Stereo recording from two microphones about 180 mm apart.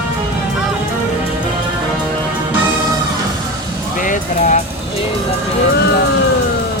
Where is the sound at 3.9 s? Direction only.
45° left (ahead or behind).